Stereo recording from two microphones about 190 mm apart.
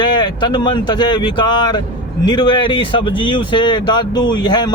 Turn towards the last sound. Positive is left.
turn(degrees=20)  # may be behind; listen again after turning